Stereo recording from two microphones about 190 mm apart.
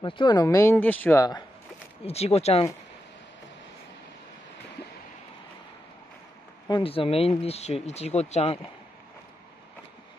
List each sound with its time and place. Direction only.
0.0 s speech: 25° left (ahead or behind)
2.0 s speech: 30° left (ahead or behind)
6.7 s speech: 30° left (ahead or behind)